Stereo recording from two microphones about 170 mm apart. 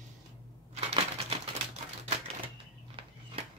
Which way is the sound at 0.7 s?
35° right (ahead or behind).